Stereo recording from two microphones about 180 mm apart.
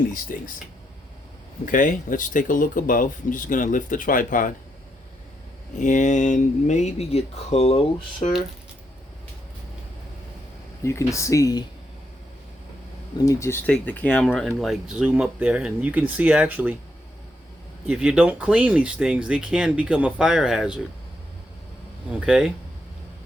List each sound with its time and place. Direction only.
0.1 s speech: 50° left (ahead or behind)
1.6 s speech: 45° left (ahead or behind)
5.7 s speech: 45° left (ahead or behind)
10.8 s speech: 15° left (ahead or behind)
13.1 s speech: 15° left (ahead or behind); by 16.7 s 10° right (ahead or behind)
17.8 s speech: 5° right (ahead or behind)
22.3 s speech: centre (ahead or behind)